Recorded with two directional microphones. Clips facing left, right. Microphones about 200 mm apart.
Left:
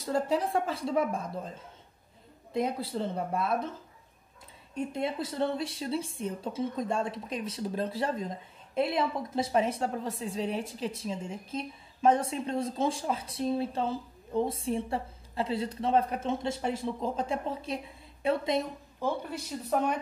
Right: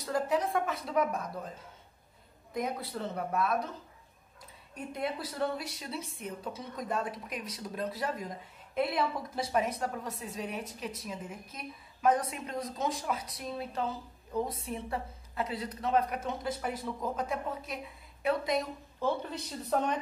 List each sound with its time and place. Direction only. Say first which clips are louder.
0.0 s speech: left 2 dB; 30° left (ahead or behind)
2.5 s speech: left 4 dB; 25° left (ahead or behind)
4.7 s speech: left 4 dB; 25° left (ahead or behind)
18.9 s speech: even; 10° left (ahead or behind)